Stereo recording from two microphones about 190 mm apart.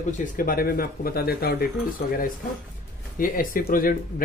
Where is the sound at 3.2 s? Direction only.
45° left (ahead or behind).